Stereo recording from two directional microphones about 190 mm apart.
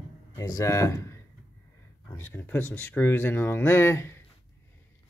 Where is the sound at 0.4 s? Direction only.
15° left (ahead or behind).